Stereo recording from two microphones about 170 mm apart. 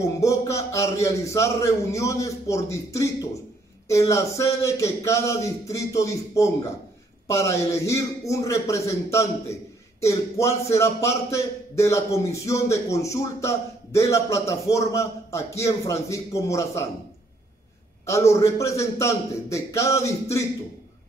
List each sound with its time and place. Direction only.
0.0 s a man's voice: 20° left (ahead or behind)
18.0 s a man's voice: 15° left (ahead or behind)